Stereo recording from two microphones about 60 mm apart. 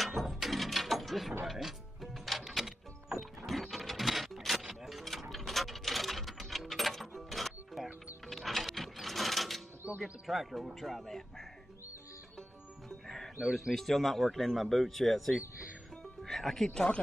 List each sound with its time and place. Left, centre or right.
0.0 s mechanisms: centre
1.4 s music: centre
8.3 s sewing machine: centre
10.2 s speech: centre
13.0 s music: centre
13.4 s speech: centre
13.7 s speech: centre